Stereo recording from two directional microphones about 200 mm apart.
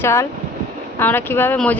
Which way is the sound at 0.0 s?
15° left (ahead or behind).